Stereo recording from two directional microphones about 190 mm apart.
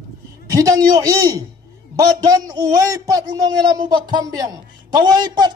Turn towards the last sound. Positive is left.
turn(degrees=-20)  # may be behind; listen again after turning